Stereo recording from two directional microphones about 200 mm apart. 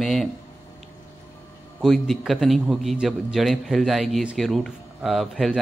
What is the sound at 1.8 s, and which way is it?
A man's voice, centre (ahead or behind).